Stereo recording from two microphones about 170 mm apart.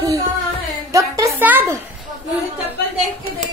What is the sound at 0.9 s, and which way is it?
Speech, 20° right (ahead or behind).